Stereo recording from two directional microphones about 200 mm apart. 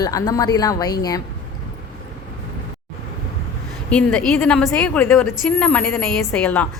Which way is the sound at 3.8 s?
5° left (ahead or behind).